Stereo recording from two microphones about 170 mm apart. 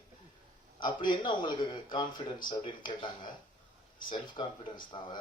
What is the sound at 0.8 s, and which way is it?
Speech, 30° left (ahead or behind).